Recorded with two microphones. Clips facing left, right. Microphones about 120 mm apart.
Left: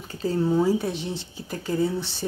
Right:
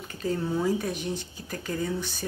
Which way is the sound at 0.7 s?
25° left (ahead or behind).